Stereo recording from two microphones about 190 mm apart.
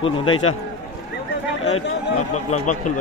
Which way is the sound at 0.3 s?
90° left.